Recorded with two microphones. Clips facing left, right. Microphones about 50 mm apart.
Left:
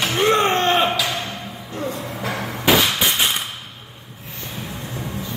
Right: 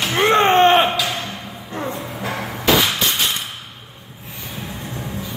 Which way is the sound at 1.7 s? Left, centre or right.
Right.